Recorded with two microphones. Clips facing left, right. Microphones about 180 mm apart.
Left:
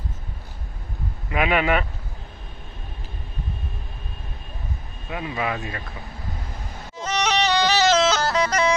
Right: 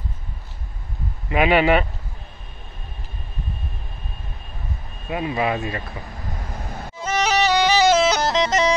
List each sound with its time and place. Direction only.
1.3 s speech: 25° right (ahead or behind)
5.1 s speech: 25° right (ahead or behind)
7.0 s music: 5° right (ahead or behind); by 8.7 s 20° right (ahead or behind)